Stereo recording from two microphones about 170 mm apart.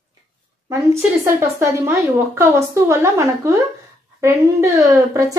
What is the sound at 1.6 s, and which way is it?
A woman's voice, 15° right (ahead or behind).